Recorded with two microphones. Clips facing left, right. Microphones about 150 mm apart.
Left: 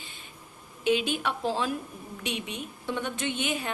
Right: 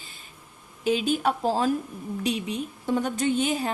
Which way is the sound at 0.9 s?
40° right (ahead or behind).